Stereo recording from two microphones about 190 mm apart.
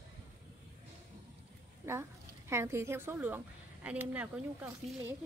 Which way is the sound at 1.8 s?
10° right (ahead or behind).